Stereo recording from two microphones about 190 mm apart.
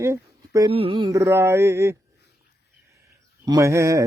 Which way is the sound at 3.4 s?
15° right (ahead or behind).